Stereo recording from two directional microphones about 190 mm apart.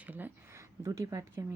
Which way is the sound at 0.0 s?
10° right (ahead or behind).